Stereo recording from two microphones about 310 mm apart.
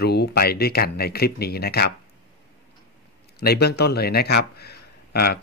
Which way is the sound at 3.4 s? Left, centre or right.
Left.